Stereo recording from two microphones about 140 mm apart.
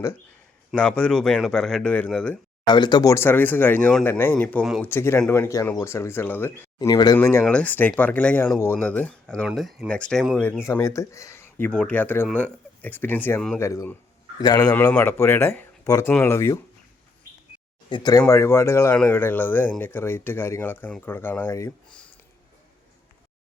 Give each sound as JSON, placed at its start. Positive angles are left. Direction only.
{"t": 0.8, "sound": "speech", "side_deg": 10}
{"t": 2.6, "sound": "speech", "side_deg": 35}
{"t": 6.7, "sound": "speech", "side_deg": 30}
{"t": 7.2, "sound": "speech", "side_deg": 15}
{"t": 10.6, "sound": "speech", "side_deg": 20}
{"t": 14.9, "sound": "speech", "side_deg": 15}
{"t": 17.8, "sound": "speech", "side_deg": 30}
{"t": 18.3, "sound": "speech", "side_deg": 20}